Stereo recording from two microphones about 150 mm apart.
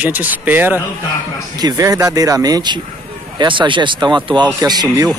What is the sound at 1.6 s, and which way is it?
Speech, 25° right (ahead or behind).